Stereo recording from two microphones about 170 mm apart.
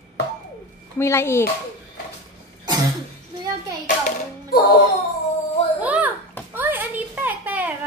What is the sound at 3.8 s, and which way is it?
Music, 50° left (ahead or behind).